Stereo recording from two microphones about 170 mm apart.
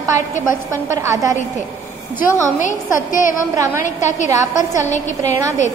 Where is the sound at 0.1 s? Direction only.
15° right (ahead or behind).